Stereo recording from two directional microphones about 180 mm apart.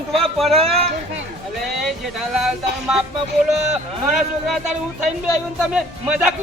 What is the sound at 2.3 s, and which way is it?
Speech, centre (ahead or behind).